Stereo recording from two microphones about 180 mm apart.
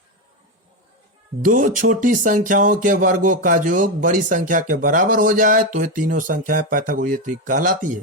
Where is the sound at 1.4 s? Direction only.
45° right (ahead or behind).